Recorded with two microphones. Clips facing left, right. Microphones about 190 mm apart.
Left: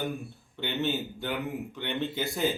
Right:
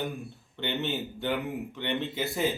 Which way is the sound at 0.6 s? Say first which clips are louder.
Left 1 dB; centre (ahead or behind).